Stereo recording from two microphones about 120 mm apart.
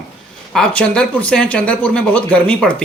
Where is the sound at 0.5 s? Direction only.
10° left (ahead or behind).